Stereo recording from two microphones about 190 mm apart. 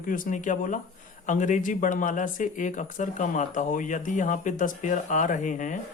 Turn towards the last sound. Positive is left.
turn(degrees=40)  # may be behind; listen again after turning